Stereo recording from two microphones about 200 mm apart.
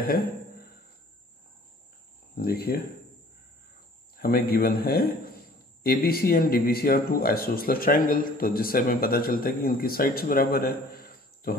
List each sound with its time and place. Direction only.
2.3 s speech: 50° left (ahead or behind)
4.2 s speech: 50° left (ahead or behind)